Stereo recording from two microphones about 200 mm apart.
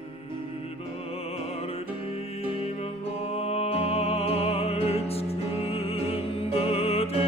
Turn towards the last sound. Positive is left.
turn(degrees=30)  # may be behind; listen again after turning